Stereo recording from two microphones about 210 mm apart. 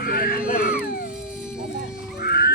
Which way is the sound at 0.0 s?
45° left (ahead or behind).